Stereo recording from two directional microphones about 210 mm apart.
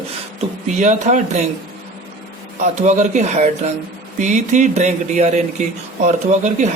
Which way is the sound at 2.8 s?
35° right (ahead or behind).